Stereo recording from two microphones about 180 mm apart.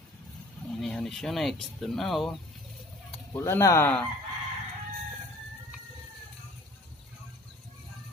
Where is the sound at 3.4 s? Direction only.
15° left (ahead or behind).